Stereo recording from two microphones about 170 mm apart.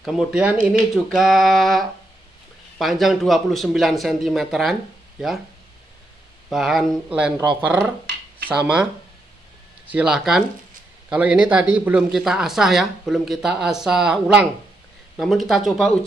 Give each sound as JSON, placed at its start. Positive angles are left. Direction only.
{"t": 0.0, "sound": "speech", "side_deg": -5}
{"t": 6.5, "sound": "speech", "side_deg": 0}
{"t": 8.1, "sound": "a sound", "side_deg": -90}
{"t": 8.5, "sound": "speech", "side_deg": -5}
{"t": 9.8, "sound": "speech", "side_deg": -5}